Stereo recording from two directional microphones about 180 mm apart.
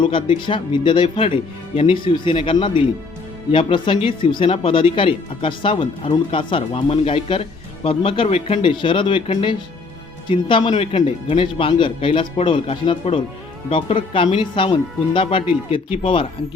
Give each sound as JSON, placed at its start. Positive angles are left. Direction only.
{"t": 0.0, "sound": "speech", "side_deg": 25}